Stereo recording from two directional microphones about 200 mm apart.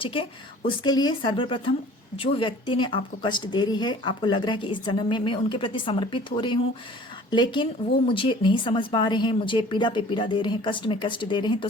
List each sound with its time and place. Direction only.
0.0 s speech: 25° left (ahead or behind)